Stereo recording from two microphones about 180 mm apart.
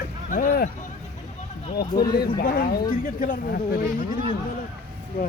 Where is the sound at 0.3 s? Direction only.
45° left (ahead or behind).